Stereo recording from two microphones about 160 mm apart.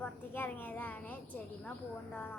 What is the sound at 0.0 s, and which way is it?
A woman's voice, 10° left (ahead or behind).